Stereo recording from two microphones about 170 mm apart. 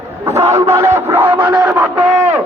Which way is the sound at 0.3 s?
15° right (ahead or behind).